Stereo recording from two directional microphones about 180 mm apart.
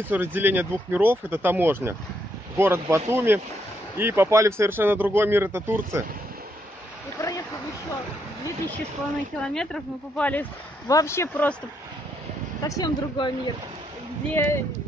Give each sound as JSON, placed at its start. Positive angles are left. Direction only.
{"t": 0.1, "sound": "a man's voice", "side_deg": -10}
{"t": 7.2, "sound": "a sound", "side_deg": 20}
{"t": 9.5, "sound": "speech", "side_deg": 5}
{"t": 12.6, "sound": "speech", "side_deg": 20}
{"t": 14.3, "sound": "speech", "side_deg": 15}